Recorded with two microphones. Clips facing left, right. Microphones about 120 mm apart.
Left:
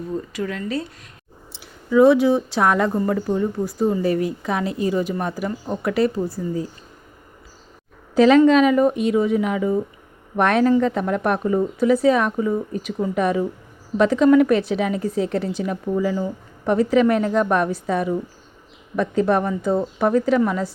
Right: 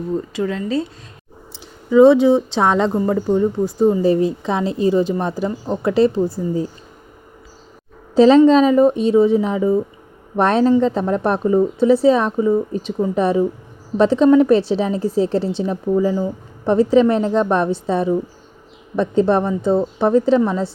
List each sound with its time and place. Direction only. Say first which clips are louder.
0.3 s a woman's voice: right 5 dB; 25° right (ahead or behind)
1.9 s a woman's voice: right 4 dB; 25° right (ahead or behind)
8.1 s a woman's voice: right 3 dB; 30° right (ahead or behind)